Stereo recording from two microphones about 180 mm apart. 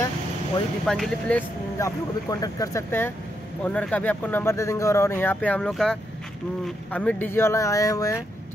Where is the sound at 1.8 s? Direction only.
20° left (ahead or behind).